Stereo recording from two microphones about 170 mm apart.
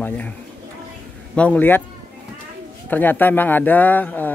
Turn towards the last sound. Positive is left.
turn(degrees=10)  # may be behind; listen again after turning